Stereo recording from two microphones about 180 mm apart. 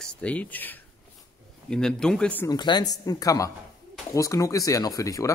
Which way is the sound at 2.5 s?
25° left (ahead or behind).